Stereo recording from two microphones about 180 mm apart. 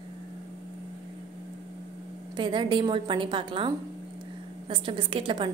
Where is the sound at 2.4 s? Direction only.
25° right (ahead or behind).